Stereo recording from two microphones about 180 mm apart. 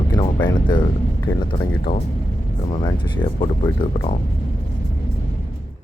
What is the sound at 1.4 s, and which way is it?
Speech, 25° left (ahead or behind).